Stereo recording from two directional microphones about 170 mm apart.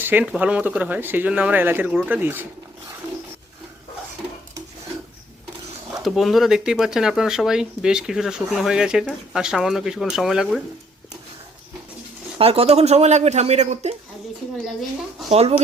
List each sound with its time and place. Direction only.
0.0 s speech: 10° right (ahead or behind)
5.9 s speech: centre (ahead or behind)
12.4 s speech: 35° right (ahead or behind)
14.8 s speech: centre (ahead or behind)
15.3 s speech: 40° right (ahead or behind)